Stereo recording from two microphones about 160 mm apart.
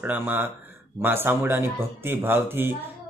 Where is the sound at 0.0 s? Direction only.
10° right (ahead or behind).